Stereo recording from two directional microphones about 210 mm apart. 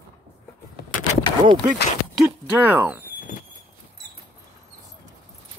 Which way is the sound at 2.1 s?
10° right (ahead or behind).